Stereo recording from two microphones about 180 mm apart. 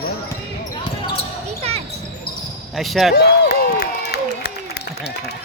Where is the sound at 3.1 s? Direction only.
60° left (ahead or behind).